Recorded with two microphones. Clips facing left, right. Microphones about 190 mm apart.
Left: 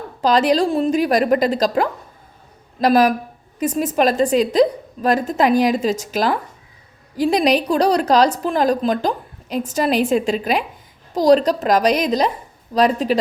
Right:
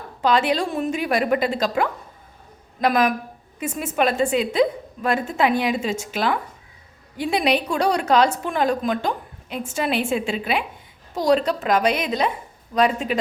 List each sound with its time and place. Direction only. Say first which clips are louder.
0.2 s a woman's voice: left 4 dB; 40° left (ahead or behind)